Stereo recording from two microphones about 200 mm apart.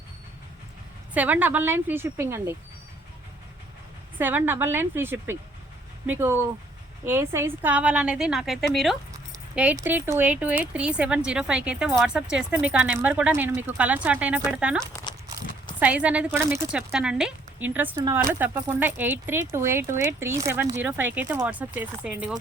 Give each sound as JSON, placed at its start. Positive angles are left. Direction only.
{"t": 1.1, "sound": "speech", "side_deg": -10}
{"t": 4.2, "sound": "speech", "side_deg": -10}
{"t": 9.7, "sound": "speech", "side_deg": -15}